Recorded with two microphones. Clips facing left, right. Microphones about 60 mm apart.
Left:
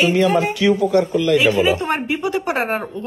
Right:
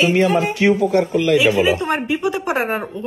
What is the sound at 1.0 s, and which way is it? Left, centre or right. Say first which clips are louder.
Speech: right 1 dB; right.